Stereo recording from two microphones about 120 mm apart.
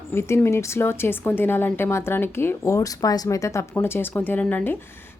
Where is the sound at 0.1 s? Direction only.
20° left (ahead or behind).